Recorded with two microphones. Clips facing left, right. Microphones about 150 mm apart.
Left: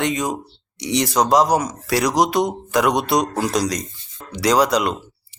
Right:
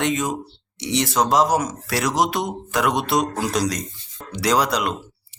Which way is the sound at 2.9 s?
40° left (ahead or behind).